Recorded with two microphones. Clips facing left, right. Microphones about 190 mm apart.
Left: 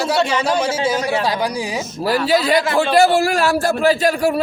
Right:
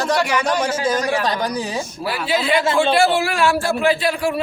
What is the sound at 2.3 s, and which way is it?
A man's voice, 40° left (ahead or behind).